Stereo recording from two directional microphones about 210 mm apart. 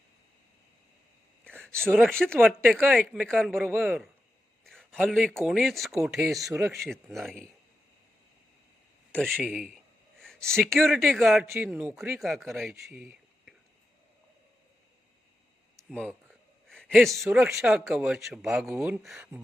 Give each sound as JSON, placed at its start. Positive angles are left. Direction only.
{"t": 1.5, "sound": "a sound", "side_deg": 5}
{"t": 1.9, "sound": "speech", "side_deg": 0}
{"t": 9.1, "sound": "a sound", "side_deg": 0}
{"t": 10.7, "sound": "speech", "side_deg": 0}
{"t": 11.4, "sound": "speech", "side_deg": -15}
{"t": 12.1, "sound": "speech", "side_deg": 0}
{"t": 15.9, "sound": "speech", "side_deg": 5}
{"t": 16.6, "sound": "a sound", "side_deg": 0}
{"t": 17.2, "sound": "speech", "side_deg": -5}